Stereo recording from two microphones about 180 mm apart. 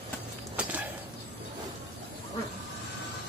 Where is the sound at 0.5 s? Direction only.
10° right (ahead or behind).